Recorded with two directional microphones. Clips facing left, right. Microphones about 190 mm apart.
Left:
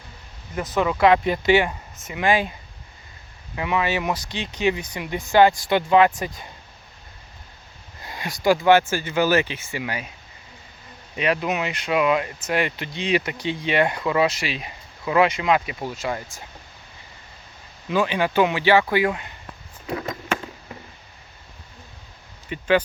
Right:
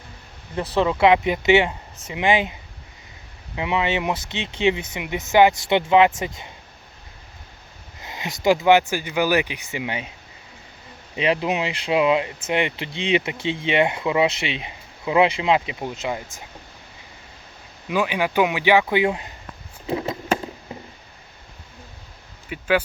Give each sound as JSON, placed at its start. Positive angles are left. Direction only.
{"t": 0.5, "sound": "speech", "side_deg": -30}
{"t": 8.0, "sound": "speech", "side_deg": -20}
{"t": 11.2, "sound": "speech", "side_deg": -25}
{"t": 17.8, "sound": "speech", "side_deg": -10}
{"t": 19.9, "sound": "a sound", "side_deg": -25}
{"t": 22.4, "sound": "speech", "side_deg": -5}